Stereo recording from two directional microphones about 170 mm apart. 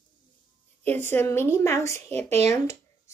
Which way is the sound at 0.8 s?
10° left (ahead or behind).